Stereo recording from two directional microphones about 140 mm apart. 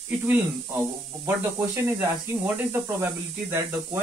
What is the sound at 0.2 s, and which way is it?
Speech, 10° right (ahead or behind).